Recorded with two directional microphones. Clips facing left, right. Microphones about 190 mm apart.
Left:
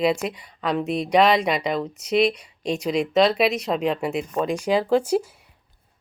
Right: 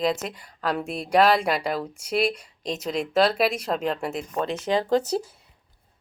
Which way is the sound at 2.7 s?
5° left (ahead or behind).